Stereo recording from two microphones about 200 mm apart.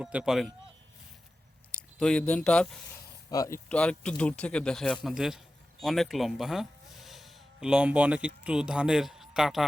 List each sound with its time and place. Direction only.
0.0 s speech: 5° right (ahead or behind)
1.7 s speech: 5° left (ahead or behind)
3.2 s speech: 15° left (ahead or behind)
3.7 s speech: 5° left (ahead or behind)